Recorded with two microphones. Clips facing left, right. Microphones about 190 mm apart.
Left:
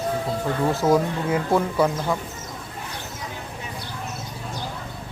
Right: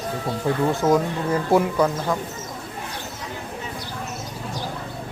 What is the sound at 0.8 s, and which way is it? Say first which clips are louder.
Speech: left 1 dB; centre (ahead or behind).